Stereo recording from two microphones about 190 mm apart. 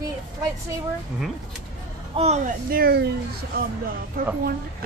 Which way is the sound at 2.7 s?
55° right (ahead or behind).